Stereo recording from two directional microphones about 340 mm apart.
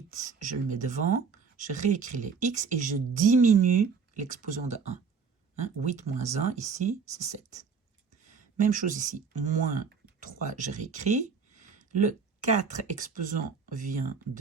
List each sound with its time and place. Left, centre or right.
0.1 s speech: right